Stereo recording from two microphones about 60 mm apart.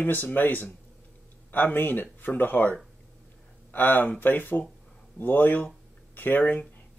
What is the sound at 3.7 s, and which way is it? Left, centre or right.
Speech, left.